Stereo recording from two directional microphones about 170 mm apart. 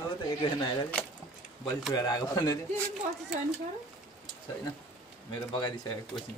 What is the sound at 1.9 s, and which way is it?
Speech, 20° left (ahead or behind).